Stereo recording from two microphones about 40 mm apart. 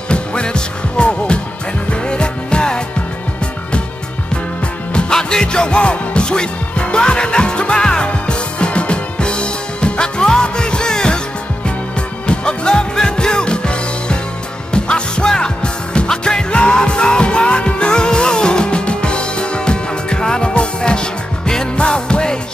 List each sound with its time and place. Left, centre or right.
0.1 s music: left
4.9 s music: centre
12.3 s music: left